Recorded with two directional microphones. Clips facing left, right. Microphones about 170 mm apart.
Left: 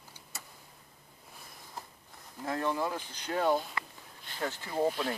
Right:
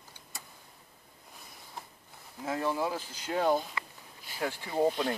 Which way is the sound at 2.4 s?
5° right (ahead or behind).